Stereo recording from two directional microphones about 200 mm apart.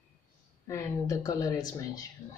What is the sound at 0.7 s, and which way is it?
Speech, 15° left (ahead or behind).